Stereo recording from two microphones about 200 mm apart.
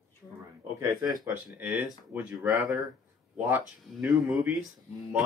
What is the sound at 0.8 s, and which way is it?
Speech, 15° right (ahead or behind).